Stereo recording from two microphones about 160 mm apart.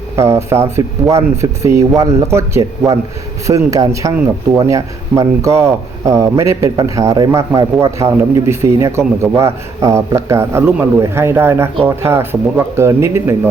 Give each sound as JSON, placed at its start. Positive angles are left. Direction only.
{"t": 0.2, "sound": "speech", "side_deg": -15}